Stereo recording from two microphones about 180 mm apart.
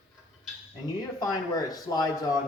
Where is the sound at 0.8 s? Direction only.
20° left (ahead or behind).